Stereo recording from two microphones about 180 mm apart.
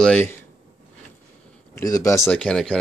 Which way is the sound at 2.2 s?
5° left (ahead or behind).